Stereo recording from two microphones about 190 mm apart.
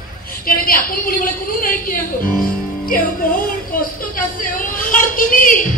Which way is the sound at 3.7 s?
50° left (ahead or behind).